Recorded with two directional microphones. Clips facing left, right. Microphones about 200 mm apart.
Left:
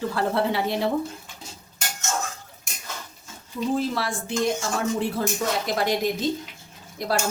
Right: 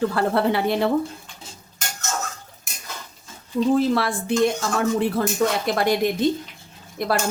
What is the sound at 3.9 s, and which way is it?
Speech, 60° right (ahead or behind).